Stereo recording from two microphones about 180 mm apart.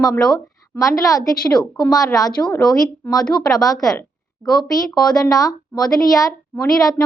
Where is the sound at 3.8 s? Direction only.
Centre (ahead or behind).